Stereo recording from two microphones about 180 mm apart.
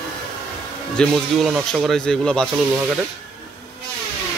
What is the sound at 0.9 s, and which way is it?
Speech, 5° left (ahead or behind).